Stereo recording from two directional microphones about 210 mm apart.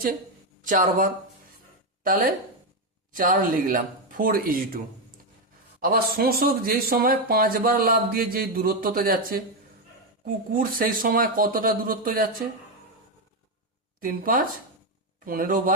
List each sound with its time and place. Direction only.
0.6 s speech: 40° right (ahead or behind)
5.8 s speech: 45° right (ahead or behind)
14.0 s speech: 40° right (ahead or behind)